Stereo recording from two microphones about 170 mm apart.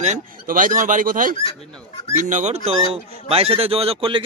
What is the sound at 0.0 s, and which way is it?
A man's voice, 50° right (ahead or behind).